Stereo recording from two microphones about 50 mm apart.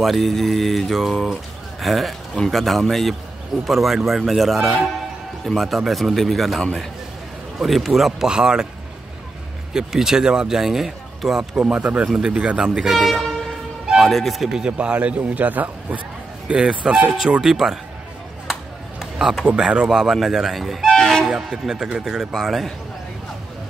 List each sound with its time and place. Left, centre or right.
0.0 s mantra: centre
2.3 s speech: centre
2.6 s mantra: centre
8.3 s speech: centre
9.8 s speech: centre
11.5 s a man's voice: right; by 13.2 s centre
14.0 s mantra: centre
14.8 s a man's voice: right
16.4 s speech: centre
18.5 s a sound: centre
19.4 s speech: centre
20.2 s mantra: centre
20.9 s toot: centre
21.3 s speech: centre